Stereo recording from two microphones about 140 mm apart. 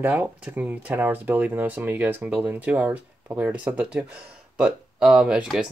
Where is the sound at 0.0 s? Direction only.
10° right (ahead or behind).